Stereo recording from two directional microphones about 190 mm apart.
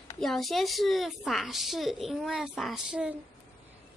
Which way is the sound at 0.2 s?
Centre (ahead or behind).